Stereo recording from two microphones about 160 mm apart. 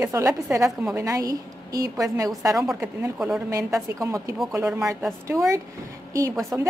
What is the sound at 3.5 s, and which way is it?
Speech, 20° right (ahead or behind).